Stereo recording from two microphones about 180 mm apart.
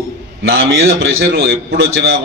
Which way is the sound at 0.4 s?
60° right (ahead or behind).